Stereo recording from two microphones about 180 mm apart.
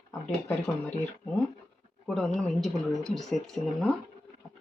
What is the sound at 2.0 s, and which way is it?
Speech, centre (ahead or behind).